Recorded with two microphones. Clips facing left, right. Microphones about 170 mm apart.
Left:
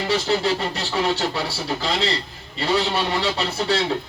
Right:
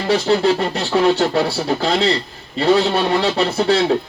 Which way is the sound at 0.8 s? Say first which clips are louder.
Right 7 dB; 55° right (ahead or behind).